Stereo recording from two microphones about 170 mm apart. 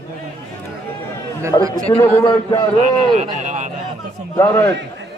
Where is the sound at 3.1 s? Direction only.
45° right (ahead or behind).